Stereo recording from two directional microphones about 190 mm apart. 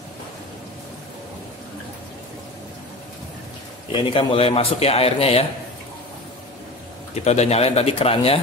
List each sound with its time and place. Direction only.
3.9 s a man's voice: 25° left (ahead or behind)
7.2 s a man's voice: 35° left (ahead or behind)